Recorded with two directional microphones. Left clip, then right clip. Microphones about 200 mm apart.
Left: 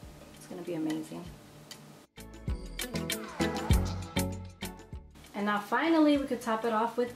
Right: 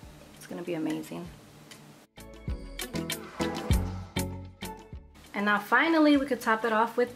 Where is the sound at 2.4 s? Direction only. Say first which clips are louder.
Even; centre (ahead or behind).